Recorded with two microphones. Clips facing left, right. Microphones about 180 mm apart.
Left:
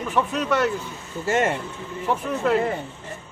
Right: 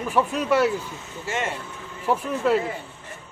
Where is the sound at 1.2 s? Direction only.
45° left (ahead or behind).